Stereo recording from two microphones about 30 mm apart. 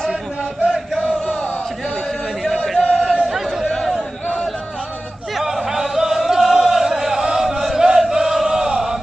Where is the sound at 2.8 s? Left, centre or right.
Centre.